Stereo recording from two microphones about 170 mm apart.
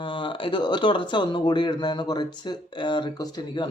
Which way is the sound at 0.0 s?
30° left (ahead or behind).